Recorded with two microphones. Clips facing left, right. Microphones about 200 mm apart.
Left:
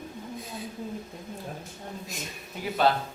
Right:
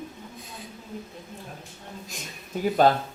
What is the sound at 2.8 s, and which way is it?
Speech, 45° right (ahead or behind).